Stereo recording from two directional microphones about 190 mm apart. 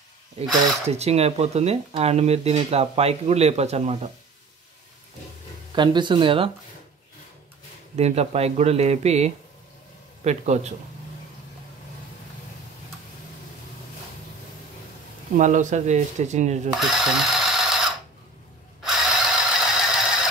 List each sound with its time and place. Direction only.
0.4 s speech: 30° right (ahead or behind)
5.8 s speech: 25° right (ahead or behind)
7.9 s speech: 35° right (ahead or behind)
15.3 s speech: 40° right (ahead or behind)
16.8 s a sound: centre (ahead or behind)
18.8 s mechanisms: centre (ahead or behind)